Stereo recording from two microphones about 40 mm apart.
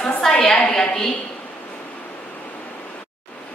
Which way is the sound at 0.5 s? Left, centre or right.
Left.